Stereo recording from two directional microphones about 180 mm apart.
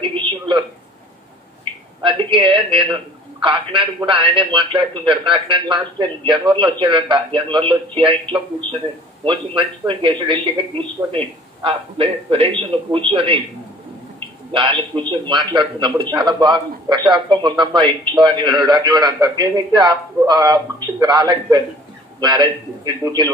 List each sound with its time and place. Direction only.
0.0 s a sound: 25° right (ahead or behind)
1.6 s a man's voice: 30° right (ahead or behind)
14.5 s speech: 25° right (ahead or behind)